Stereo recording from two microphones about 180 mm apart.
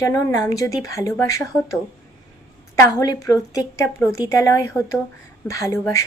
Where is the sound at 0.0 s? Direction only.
20° left (ahead or behind).